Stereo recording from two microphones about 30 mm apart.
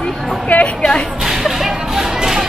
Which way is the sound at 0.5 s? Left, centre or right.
Left.